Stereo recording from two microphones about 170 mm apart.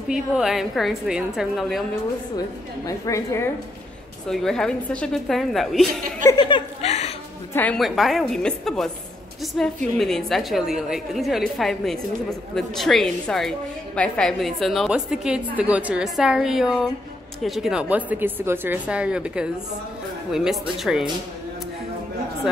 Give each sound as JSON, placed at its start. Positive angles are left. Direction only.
{"t": 0.1, "sound": "a woman's voice", "side_deg": -5}
{"t": 2.9, "sound": "a woman's voice", "side_deg": 20}
{"t": 4.3, "sound": "a woman's voice", "side_deg": 0}
{"t": 6.2, "sound": "a woman's voice", "side_deg": 25}
{"t": 6.8, "sound": "music", "side_deg": 40}
{"t": 7.5, "sound": "a woman's voice", "side_deg": 5}